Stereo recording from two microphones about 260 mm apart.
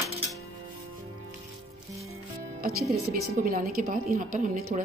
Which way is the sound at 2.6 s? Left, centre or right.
Right.